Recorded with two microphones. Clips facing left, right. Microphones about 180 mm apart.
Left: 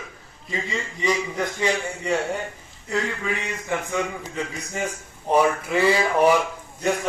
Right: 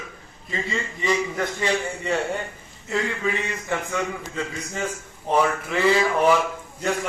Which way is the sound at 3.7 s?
15° left (ahead or behind).